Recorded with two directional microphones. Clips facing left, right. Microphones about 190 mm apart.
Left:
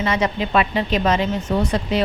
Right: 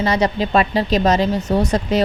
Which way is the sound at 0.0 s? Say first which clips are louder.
Right 3 dB; 35° right (ahead or behind).